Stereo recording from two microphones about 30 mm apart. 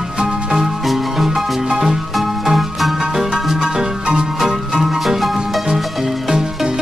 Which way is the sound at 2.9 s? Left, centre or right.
Right.